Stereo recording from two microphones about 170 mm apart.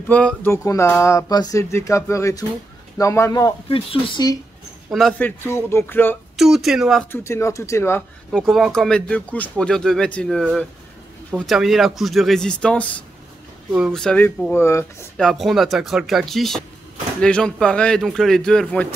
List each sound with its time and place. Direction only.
0.1 s speech: 5° left (ahead or behind)
3.6 s speech: 30° left (ahead or behind)
4.9 s speech: centre (ahead or behind)
5.4 s speech: 15° left (ahead or behind)
6.3 s speech: centre (ahead or behind)
7.1 s speech: 15° left (ahead or behind)
8.3 s speech: centre (ahead or behind)
15.1 s speech: centre (ahead or behind)